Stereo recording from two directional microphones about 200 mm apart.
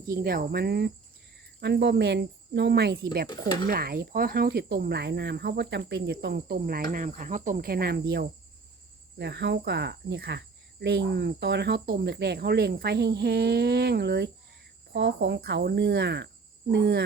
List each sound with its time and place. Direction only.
0.1 s speech: 50° right (ahead or behind)